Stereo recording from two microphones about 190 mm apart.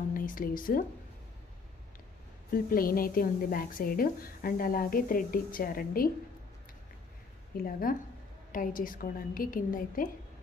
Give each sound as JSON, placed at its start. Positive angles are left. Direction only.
{"t": 0.1, "sound": "speech", "side_deg": 45}
{"t": 2.5, "sound": "a woman's voice", "side_deg": 50}
{"t": 7.9, "sound": "a woman's voice", "side_deg": 50}